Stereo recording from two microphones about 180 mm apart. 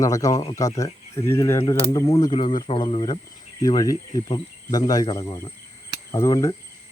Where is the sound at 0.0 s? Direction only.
20° left (ahead or behind).